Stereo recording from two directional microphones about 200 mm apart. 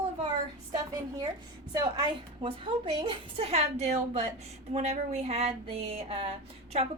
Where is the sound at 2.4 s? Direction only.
25° right (ahead or behind).